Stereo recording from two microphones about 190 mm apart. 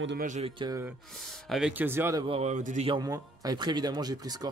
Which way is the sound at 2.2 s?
35° right (ahead or behind).